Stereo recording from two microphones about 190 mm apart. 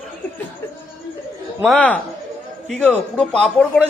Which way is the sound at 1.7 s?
10° left (ahead or behind).